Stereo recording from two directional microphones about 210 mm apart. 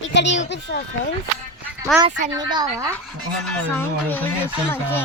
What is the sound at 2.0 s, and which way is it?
Speech, 20° right (ahead or behind).